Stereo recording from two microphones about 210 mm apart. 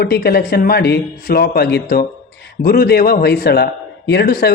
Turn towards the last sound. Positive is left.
turn(degrees=45)  # may be behind; listen again after turning